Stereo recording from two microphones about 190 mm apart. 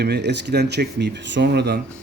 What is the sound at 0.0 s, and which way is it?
Speech, 60° right (ahead or behind).